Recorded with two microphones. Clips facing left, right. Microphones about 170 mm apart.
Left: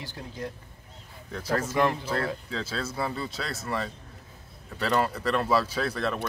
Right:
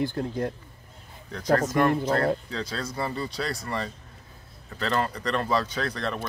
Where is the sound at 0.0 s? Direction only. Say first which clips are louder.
Right 10 dB; 55° right (ahead or behind).